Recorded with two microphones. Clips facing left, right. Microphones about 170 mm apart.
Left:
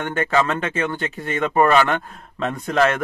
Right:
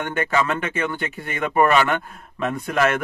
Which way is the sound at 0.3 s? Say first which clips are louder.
Left 3 dB; 35° left (ahead or behind).